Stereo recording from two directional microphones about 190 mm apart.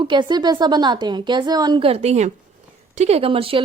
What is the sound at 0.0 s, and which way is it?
A woman's voice, 25° right (ahead or behind).